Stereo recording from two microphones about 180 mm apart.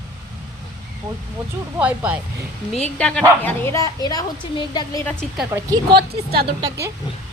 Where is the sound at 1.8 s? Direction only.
10° right (ahead or behind).